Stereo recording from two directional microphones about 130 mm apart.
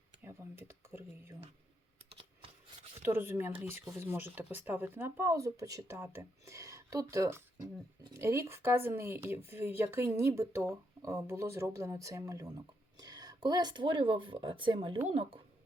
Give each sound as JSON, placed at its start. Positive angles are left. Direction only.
{"t": 0.2, "sound": "speech", "side_deg": -20}
{"t": 2.0, "sound": "computer keyboard", "side_deg": -45}
{"t": 3.0, "sound": "speech", "side_deg": -15}
{"t": 15.0, "sound": "speech", "side_deg": -50}